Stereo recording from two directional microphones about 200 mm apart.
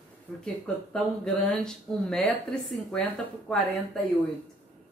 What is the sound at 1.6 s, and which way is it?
Speech, 5° left (ahead or behind).